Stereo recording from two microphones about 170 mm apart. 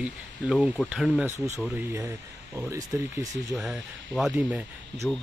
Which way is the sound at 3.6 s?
5° right (ahead or behind).